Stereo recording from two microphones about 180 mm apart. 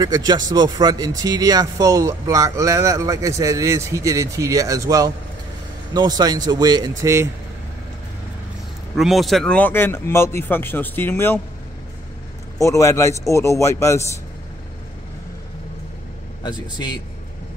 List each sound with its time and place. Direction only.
0.0 s speech: 20° right (ahead or behind)
8.9 s speech: centre (ahead or behind)
12.5 s speech: 15° left (ahead or behind)
16.4 s speech: 25° left (ahead or behind)